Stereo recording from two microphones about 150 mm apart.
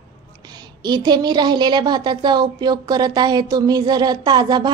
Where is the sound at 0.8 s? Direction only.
30° right (ahead or behind).